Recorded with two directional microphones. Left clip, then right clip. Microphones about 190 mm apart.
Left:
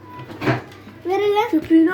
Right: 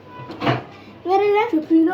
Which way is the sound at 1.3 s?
15° left (ahead or behind).